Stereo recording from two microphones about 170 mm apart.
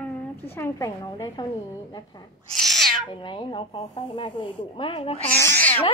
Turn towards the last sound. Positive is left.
turn(degrees=10)  # may be behind; listen again after turning